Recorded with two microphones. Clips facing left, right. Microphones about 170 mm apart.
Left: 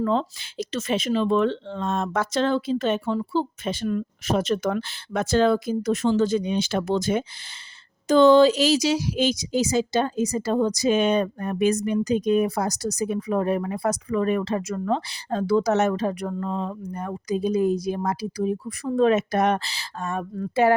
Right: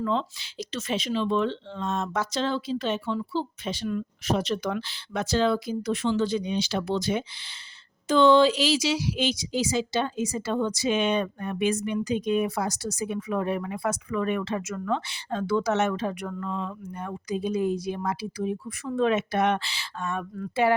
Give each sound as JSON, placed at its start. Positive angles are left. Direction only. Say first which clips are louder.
{"t": 0.0, "sound": "speech", "louder": "left 4 dB", "side_deg": 45}